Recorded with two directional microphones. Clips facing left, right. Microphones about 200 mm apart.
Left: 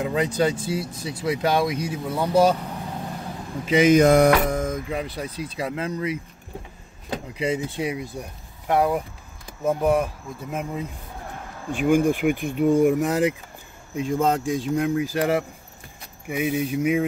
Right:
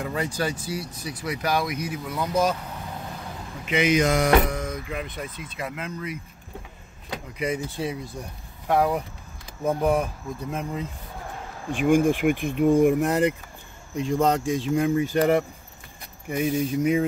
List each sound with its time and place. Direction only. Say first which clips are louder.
0.0 s speech: left 5 dB; 20° left (ahead or behind)
3.6 s speech: left 6 dB; 40° left (ahead or behind)
4.8 s speech: left 4 dB; 35° left (ahead or behind)
7.1 s speech: left 3 dB; 25° left (ahead or behind)
8.6 s speech: left 1 dB; centre (ahead or behind)